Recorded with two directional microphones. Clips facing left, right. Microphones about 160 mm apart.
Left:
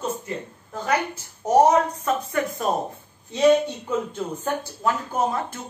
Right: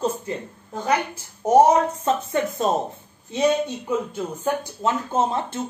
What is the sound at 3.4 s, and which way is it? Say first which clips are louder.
Speech: left 3 dB; 10° right (ahead or behind).